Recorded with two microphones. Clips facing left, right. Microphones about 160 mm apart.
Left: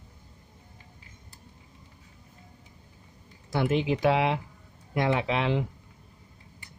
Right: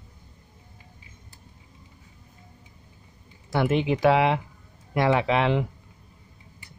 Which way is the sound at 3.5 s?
65° right (ahead or behind).